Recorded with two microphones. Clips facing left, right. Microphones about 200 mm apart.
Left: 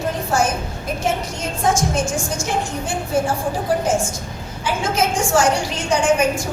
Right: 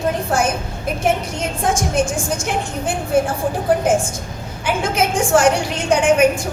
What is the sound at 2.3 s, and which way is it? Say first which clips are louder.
A woman's voice: right 1 dB; 55° right (ahead or behind).